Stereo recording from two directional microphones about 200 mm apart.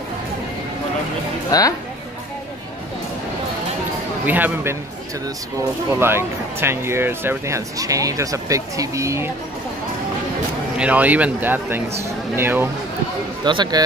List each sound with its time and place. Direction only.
1.5 s speech: 20° left (ahead or behind)
4.3 s speech: 10° right (ahead or behind)
5.9 s speech: 10° right (ahead or behind)
10.8 s speech: 5° right (ahead or behind)
13.4 s speech: 20° right (ahead or behind)